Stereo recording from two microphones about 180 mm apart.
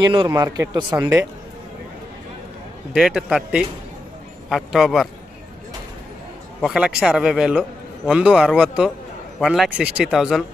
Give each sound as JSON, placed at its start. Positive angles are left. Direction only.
{"t": 0.0, "sound": "speech", "side_deg": -25}
{"t": 2.9, "sound": "a man's voice", "side_deg": -5}
{"t": 6.6, "sound": "a man's voice", "side_deg": -5}